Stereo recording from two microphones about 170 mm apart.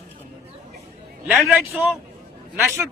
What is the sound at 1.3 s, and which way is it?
Speech, 5° right (ahead or behind).